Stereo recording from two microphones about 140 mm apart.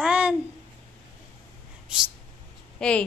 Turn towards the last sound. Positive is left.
turn(degrees=10)  # may be behind; listen again after turning